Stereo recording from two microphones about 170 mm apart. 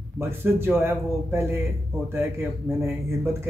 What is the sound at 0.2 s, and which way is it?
Speech, 15° right (ahead or behind).